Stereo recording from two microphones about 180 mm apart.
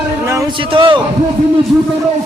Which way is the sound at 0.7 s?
25° right (ahead or behind).